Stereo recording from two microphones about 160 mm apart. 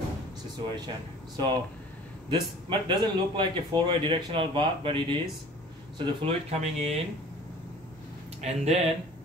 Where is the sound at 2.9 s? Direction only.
30° right (ahead or behind).